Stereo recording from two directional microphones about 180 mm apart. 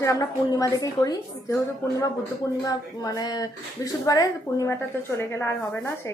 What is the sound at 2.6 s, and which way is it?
A woman's voice, 20° left (ahead or behind).